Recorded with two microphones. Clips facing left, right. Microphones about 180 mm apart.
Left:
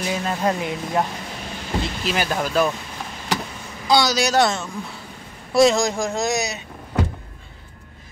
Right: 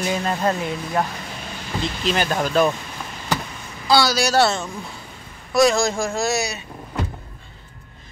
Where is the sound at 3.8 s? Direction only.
20° left (ahead or behind).